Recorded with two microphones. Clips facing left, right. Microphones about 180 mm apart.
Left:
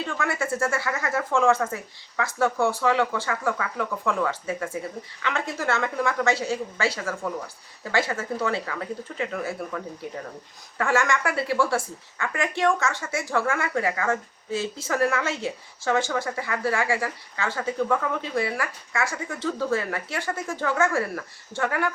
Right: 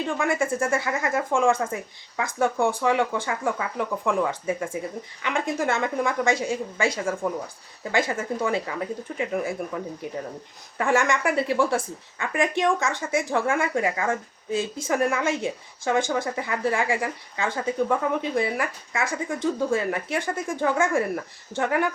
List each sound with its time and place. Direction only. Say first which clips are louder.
0.0 s speech: right 4 dB; 15° right (ahead or behind)